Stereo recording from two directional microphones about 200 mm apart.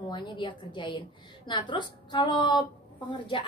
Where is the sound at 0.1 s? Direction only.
25° left (ahead or behind).